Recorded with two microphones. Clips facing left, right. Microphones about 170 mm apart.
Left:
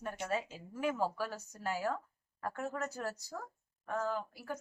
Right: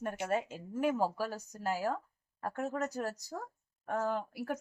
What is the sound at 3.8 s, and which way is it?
Speech, 30° right (ahead or behind).